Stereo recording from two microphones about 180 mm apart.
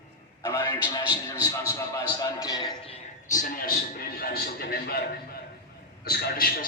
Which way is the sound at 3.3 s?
50° left (ahead or behind).